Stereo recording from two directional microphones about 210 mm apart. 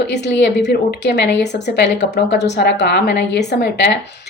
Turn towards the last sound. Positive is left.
turn(degrees=50)  # may be behind; listen again after turning